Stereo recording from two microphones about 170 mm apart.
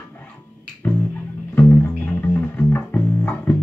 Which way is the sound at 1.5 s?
10° left (ahead or behind).